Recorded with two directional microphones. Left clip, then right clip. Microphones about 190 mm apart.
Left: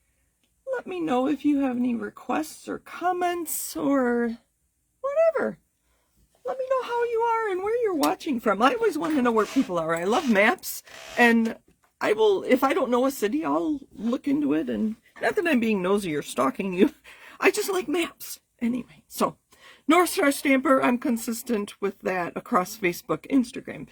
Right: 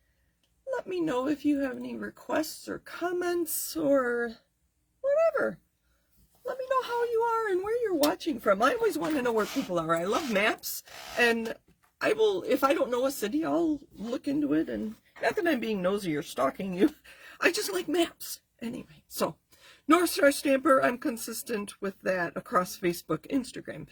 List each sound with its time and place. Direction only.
1.0 s speech: 30° left (ahead or behind)
5.0 s a sound: 45° left (ahead or behind)
6.4 s speech: 30° left (ahead or behind)
7.8 s speech: 45° left (ahead or behind)
9.0 s speech: 30° left (ahead or behind)
9.7 s speech: 45° left (ahead or behind)
19.1 s speech: 40° left (ahead or behind)